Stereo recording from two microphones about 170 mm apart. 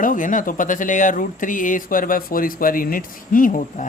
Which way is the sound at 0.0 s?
50° left (ahead or behind).